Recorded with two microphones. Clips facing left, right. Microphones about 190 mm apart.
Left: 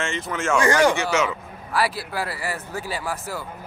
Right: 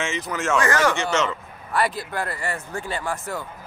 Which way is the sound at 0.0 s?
Centre (ahead or behind).